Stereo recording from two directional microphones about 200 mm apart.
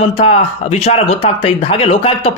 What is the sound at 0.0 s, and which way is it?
Speech, 30° left (ahead or behind).